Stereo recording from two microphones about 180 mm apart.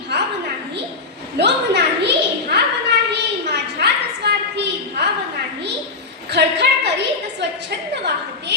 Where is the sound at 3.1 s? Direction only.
70° right (ahead or behind).